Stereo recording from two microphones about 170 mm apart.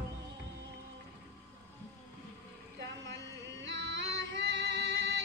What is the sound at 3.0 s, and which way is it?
Music, 90° right.